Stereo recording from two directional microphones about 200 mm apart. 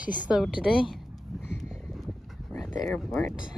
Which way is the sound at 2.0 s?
Centre (ahead or behind).